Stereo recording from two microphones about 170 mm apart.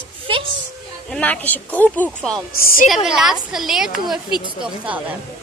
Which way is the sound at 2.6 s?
55° left (ahead or behind).